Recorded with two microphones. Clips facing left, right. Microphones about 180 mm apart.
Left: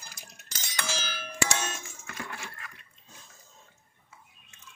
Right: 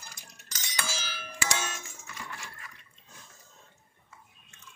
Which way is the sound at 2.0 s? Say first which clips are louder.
Left 5 dB; 65° left (ahead or behind).